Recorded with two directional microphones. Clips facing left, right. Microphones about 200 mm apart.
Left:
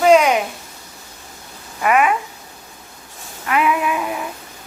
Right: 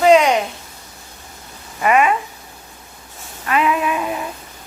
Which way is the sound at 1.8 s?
5° left (ahead or behind).